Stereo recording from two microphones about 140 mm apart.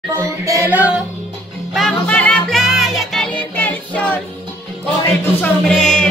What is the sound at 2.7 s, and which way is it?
Music, centre (ahead or behind).